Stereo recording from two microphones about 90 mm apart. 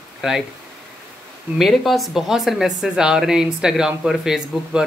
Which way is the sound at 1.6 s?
Centre (ahead or behind).